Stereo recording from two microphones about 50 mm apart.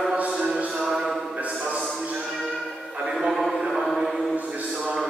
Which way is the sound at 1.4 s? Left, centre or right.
Right.